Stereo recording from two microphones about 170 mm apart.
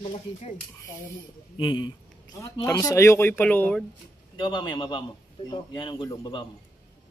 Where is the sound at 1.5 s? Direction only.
25° left (ahead or behind); by 3.8 s 10° left (ahead or behind).